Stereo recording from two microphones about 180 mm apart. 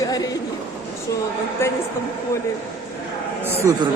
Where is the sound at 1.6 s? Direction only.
15° left (ahead or behind).